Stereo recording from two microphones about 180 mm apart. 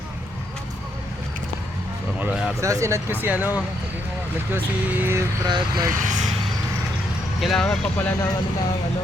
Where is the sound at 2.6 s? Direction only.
15° right (ahead or behind).